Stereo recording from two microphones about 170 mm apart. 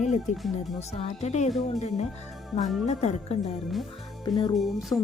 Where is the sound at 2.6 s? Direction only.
Centre (ahead or behind).